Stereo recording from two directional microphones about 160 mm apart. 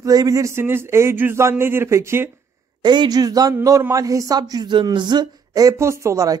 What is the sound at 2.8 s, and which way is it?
A man's voice, 25° right (ahead or behind).